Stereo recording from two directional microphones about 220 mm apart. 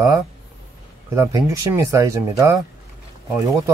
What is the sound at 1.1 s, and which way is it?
Speech, 15° right (ahead or behind).